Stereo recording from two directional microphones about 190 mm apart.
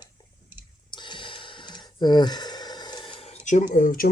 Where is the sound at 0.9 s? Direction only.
25° left (ahead or behind).